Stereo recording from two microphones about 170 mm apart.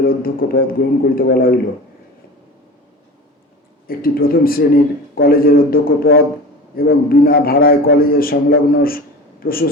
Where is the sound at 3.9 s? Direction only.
60° left (ahead or behind).